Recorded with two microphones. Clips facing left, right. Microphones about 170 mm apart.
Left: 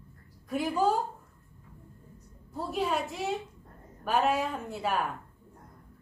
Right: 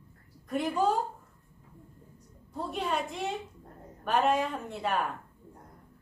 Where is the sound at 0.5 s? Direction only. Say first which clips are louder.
Even; centre (ahead or behind).